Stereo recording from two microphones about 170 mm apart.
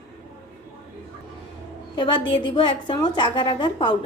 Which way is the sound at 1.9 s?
30° left (ahead or behind).